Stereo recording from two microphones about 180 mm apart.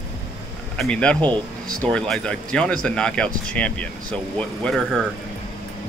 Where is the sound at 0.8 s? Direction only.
5° left (ahead or behind).